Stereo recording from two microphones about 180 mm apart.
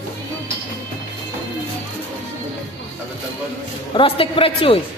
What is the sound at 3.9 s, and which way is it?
Speech, 30° left (ahead or behind).